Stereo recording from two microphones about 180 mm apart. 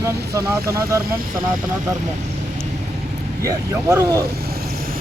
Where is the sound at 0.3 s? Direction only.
20° right (ahead or behind).